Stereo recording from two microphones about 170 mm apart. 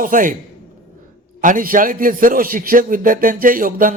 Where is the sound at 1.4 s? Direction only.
50° right (ahead or behind).